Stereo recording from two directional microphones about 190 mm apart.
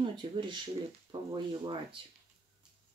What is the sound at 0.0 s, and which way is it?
Speech, 25° right (ahead or behind).